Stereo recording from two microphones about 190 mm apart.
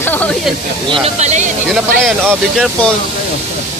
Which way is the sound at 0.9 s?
35° right (ahead or behind).